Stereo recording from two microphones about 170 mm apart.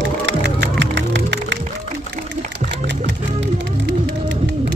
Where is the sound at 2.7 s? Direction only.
90° right.